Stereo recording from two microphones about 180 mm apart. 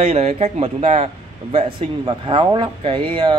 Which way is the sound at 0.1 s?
35° right (ahead or behind).